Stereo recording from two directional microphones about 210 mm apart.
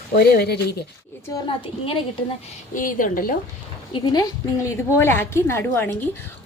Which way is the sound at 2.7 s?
40° left (ahead or behind).